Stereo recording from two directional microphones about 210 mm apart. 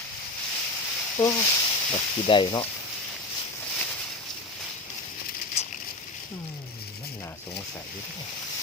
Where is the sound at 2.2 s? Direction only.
20° left (ahead or behind).